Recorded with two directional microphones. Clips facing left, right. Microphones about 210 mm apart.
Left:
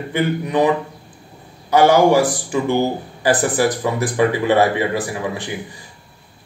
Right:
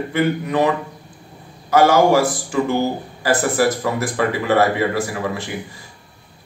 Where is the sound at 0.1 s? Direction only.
15° left (ahead or behind).